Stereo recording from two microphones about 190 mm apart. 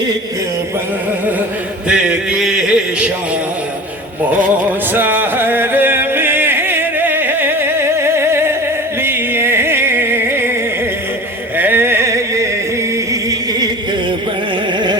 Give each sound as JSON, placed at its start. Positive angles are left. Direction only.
{"t": 1.9, "sound": "a sound", "side_deg": -5}
{"t": 4.9, "sound": "music", "side_deg": -10}
{"t": 11.5, "sound": "carnatic music", "side_deg": -10}